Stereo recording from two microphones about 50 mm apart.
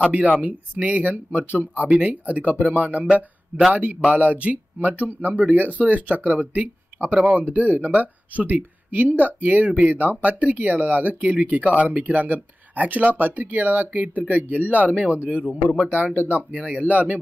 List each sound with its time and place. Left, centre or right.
0.4 s speech: right